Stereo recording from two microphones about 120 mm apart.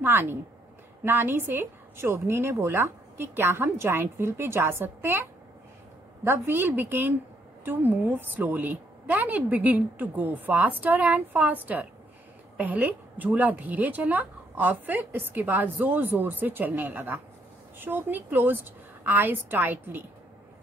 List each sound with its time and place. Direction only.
0.0 s a woman's voice: 20° right (ahead or behind)